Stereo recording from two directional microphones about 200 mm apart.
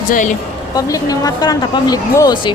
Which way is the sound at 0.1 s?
40° left (ahead or behind).